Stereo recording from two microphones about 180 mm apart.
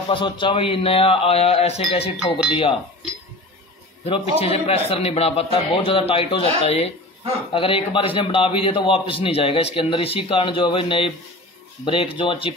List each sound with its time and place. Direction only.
0.1 s a man's voice: 25° left (ahead or behind)
4.0 s a man's voice: 35° left (ahead or behind)